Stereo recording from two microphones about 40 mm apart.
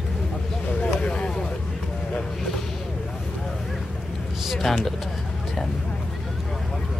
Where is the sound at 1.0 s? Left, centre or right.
Left.